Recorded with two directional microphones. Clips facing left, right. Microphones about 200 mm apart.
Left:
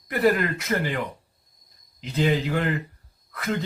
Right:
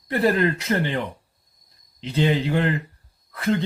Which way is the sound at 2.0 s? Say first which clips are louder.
Right 2 dB; 30° right (ahead or behind).